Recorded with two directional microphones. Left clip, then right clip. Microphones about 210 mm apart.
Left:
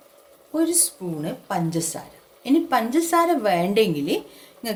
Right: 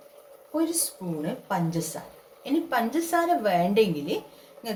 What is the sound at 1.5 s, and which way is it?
A woman's voice, 35° left (ahead or behind).